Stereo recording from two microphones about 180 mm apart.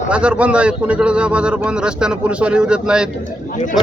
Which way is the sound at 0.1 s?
5° right (ahead or behind).